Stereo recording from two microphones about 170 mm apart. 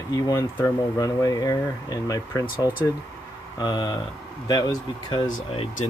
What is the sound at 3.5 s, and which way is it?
Speech, 25° left (ahead or behind).